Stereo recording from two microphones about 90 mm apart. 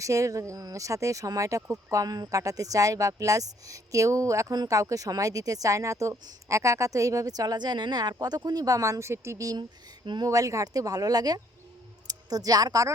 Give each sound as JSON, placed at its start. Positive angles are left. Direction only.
{"t": 0.0, "sound": "speech", "side_deg": -35}